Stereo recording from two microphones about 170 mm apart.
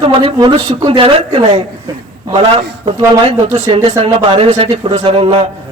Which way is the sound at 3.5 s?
35° right (ahead or behind).